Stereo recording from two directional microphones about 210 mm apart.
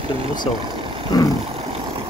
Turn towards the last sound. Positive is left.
turn(degrees=15)  # may be behind; listen again after turning